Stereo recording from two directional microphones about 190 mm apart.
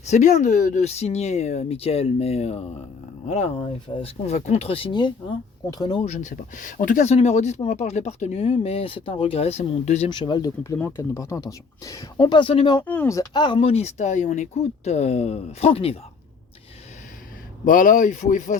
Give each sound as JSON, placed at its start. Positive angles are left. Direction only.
{"t": 0.0, "sound": "speech", "side_deg": 40}
{"t": 6.1, "sound": "speech", "side_deg": 40}
{"t": 10.1, "sound": "speech", "side_deg": 25}
{"t": 12.8, "sound": "speech", "side_deg": 10}
{"t": 17.7, "sound": "speech", "side_deg": 45}